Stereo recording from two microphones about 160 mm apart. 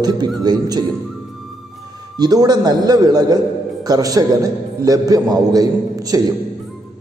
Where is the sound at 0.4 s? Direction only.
25° right (ahead or behind).